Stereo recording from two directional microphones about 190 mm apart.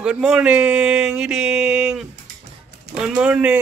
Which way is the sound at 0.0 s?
5° right (ahead or behind).